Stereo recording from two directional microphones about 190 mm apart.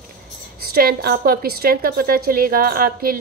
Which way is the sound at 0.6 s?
55° right (ahead or behind).